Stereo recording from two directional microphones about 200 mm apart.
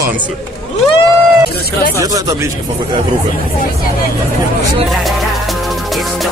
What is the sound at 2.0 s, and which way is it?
Speech, 15° right (ahead or behind).